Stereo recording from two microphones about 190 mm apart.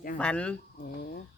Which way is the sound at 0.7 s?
50° left (ahead or behind).